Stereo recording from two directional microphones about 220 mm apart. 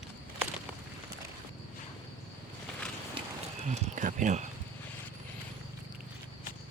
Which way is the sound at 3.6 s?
35° right (ahead or behind).